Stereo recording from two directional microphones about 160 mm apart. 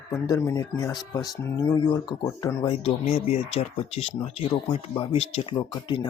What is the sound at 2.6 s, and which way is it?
Speech, 40° left (ahead or behind).